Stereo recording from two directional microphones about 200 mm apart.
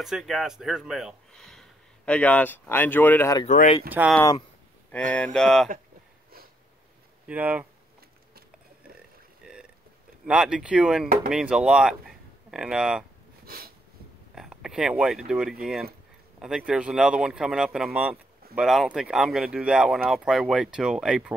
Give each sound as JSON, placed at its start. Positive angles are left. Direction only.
{"t": 0.0, "sound": "speech", "side_deg": 0}
{"t": 3.4, "sound": "speech", "side_deg": 35}
{"t": 4.0, "sound": "speech", "side_deg": -10}
{"t": 5.1, "sound": "speech", "side_deg": 5}
{"t": 7.2, "sound": "speech", "side_deg": -5}
{"t": 9.4, "sound": "burping", "side_deg": -5}
{"t": 10.2, "sound": "speech", "side_deg": -5}
{"t": 13.5, "sound": "a sound", "side_deg": -50}
{"t": 14.3, "sound": "speech", "side_deg": -5}